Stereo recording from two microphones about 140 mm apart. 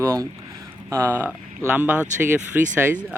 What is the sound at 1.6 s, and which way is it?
Speech, 15° right (ahead or behind).